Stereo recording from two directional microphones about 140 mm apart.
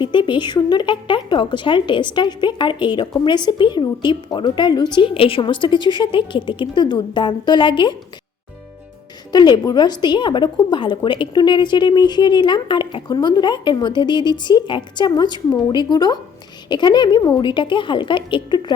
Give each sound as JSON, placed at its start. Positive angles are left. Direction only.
{"t": 0.0, "sound": "a woman's voice", "side_deg": 35}
{"t": 9.3, "sound": "a woman's voice", "side_deg": 30}